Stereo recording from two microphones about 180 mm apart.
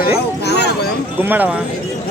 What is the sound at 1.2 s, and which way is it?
Speech, 10° right (ahead or behind).